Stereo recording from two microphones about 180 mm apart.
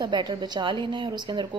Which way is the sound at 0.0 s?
25° right (ahead or behind).